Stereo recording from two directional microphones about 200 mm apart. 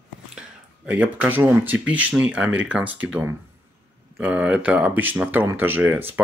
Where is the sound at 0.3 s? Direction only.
5° right (ahead or behind).